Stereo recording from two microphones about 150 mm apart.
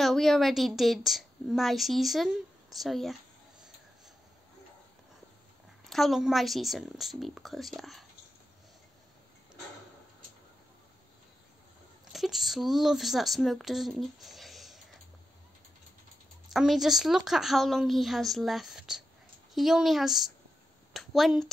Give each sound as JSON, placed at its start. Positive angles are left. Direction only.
{"t": 0.0, "sound": "a woman's voice", "side_deg": 0}
{"t": 5.9, "sound": "a woman's voice", "side_deg": 0}
{"t": 12.1, "sound": "speech", "side_deg": 0}
{"t": 16.5, "sound": "a woman's voice", "side_deg": 0}